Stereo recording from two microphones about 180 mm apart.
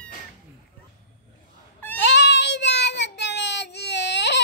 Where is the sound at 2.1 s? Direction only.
75° left (ahead or behind).